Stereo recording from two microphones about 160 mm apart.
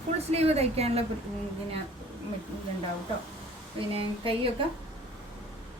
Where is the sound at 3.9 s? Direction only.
35° right (ahead or behind).